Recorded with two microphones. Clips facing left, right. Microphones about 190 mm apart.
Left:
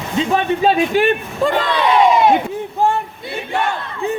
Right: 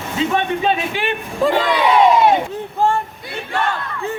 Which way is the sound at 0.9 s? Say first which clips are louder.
Left 8 dB; 45° left (ahead or behind).